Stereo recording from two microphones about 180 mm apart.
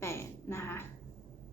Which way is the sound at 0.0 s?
15° left (ahead or behind).